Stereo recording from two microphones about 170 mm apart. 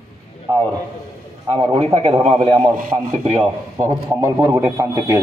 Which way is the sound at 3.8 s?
15° right (ahead or behind).